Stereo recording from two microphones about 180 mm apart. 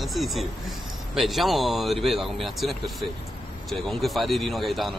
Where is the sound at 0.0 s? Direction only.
Centre (ahead or behind).